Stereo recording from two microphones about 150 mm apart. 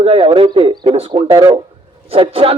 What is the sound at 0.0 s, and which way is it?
Speech, 40° right (ahead or behind).